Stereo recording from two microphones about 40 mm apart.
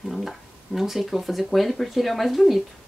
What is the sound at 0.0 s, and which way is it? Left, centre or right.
Speech, centre.